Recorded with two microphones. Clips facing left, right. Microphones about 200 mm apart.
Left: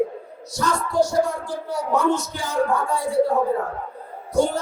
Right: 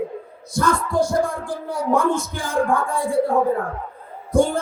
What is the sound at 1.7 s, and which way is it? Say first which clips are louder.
Speech: right 1 dB; 50° right (ahead or behind).